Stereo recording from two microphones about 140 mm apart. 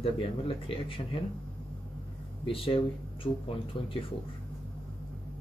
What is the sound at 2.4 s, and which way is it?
Speech, 40° left (ahead or behind).